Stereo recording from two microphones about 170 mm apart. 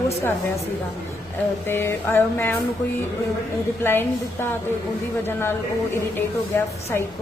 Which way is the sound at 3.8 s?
15° left (ahead or behind).